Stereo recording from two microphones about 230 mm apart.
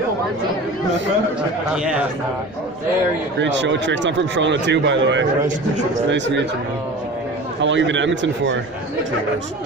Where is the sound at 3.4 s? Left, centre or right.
Right.